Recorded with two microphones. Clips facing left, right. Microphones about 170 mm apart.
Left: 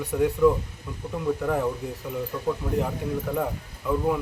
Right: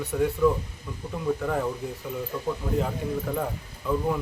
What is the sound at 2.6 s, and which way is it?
Speech, centre (ahead or behind).